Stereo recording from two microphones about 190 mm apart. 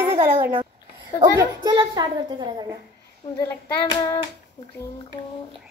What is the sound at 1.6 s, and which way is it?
A woman's voice, 25° right (ahead or behind).